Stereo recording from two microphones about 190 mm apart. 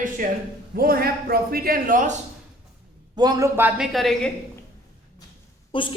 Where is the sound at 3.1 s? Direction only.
20° right (ahead or behind); by 4.3 s centre (ahead or behind).